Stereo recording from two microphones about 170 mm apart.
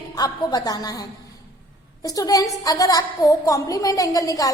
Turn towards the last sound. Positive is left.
turn(degrees=20)  # may be behind; listen again after turning